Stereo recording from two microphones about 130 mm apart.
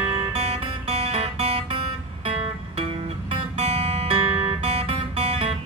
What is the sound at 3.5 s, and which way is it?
Guitar, 50° right (ahead or behind).